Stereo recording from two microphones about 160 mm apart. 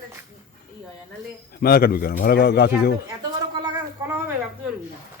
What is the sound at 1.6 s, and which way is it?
A man's voice, 70° left (ahead or behind).